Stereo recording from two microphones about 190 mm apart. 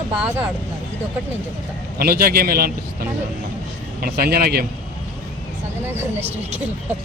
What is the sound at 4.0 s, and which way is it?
Speech, 55° right (ahead or behind).